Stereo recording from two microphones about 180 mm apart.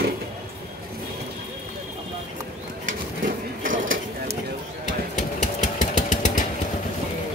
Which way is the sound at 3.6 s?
45° right (ahead or behind).